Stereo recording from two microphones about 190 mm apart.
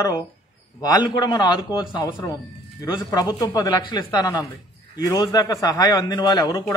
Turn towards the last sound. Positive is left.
turn(degrees=20)  # may be behind; listen again after turning